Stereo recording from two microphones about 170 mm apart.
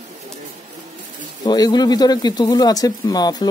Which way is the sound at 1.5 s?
25° left (ahead or behind).